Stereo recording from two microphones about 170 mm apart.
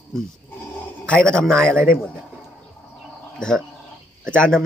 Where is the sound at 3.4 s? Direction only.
5° left (ahead or behind).